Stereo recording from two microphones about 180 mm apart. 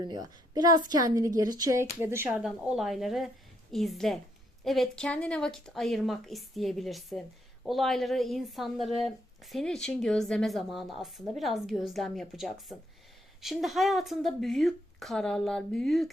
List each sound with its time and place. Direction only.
0.0 s a woman's voice: 20° right (ahead or behind); by 16.0 s centre (ahead or behind)